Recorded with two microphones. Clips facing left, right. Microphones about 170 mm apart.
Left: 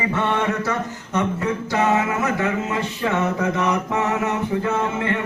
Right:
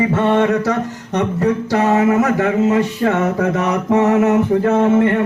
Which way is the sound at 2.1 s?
45° right (ahead or behind).